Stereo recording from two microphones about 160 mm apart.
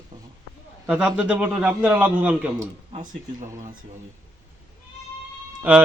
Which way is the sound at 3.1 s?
50° right (ahead or behind).